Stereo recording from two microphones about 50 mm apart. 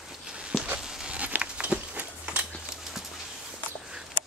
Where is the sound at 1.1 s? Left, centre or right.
Right.